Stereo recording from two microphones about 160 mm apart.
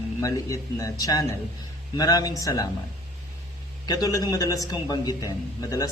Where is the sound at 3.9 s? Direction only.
20° left (ahead or behind).